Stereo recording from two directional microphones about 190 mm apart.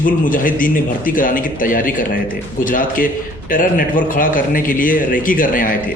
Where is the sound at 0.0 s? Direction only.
45° left (ahead or behind).